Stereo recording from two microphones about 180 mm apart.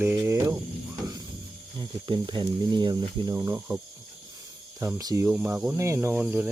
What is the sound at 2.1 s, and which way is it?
Speech, 25° right (ahead or behind).